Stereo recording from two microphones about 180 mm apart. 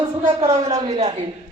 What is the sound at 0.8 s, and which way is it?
Speech, 35° right (ahead or behind).